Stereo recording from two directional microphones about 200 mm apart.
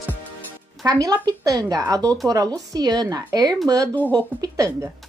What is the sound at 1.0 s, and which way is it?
Speech, 20° right (ahead or behind).